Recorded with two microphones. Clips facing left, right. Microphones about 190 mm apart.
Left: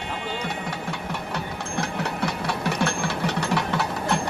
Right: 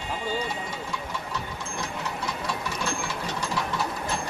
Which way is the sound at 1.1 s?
65° left (ahead or behind).